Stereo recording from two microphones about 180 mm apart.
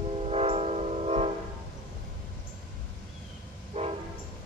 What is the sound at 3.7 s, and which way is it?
Train, 40° right (ahead or behind).